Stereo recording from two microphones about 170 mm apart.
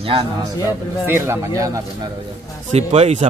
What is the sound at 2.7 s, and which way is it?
Speech, 40° right (ahead or behind).